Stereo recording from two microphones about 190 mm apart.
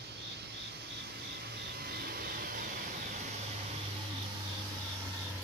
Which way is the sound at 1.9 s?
55° right (ahead or behind).